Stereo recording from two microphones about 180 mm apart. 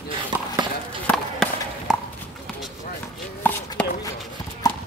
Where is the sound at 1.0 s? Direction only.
5° left (ahead or behind).